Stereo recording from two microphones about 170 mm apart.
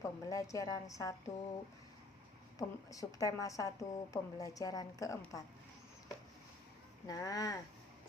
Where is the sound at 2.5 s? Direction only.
20° left (ahead or behind).